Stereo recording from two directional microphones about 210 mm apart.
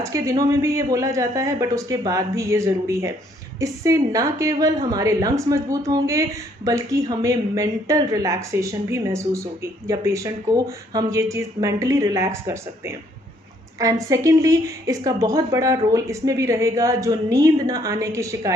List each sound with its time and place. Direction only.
0.0 s speech: 15° right (ahead or behind)